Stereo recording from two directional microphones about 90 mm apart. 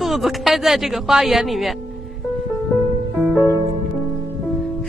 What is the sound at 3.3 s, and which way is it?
Music, 35° left (ahead or behind).